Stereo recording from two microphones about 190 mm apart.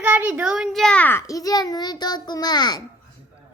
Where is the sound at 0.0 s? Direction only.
10° right (ahead or behind); by 2.8 s 20° left (ahead or behind).